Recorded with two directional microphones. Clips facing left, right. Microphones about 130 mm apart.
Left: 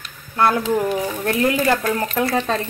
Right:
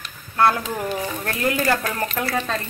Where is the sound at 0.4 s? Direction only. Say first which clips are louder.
Left 2 dB; 20° left (ahead or behind).